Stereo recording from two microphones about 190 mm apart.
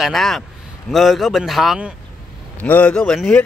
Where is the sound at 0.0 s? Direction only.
Centre (ahead or behind).